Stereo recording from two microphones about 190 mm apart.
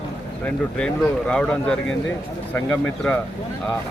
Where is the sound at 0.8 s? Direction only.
5° left (ahead or behind).